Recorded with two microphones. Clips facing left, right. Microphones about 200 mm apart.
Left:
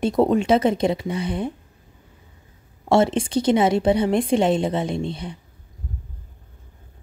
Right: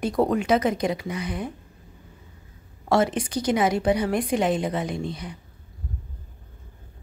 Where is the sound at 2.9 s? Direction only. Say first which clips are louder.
Left 4 dB; 25° left (ahead or behind).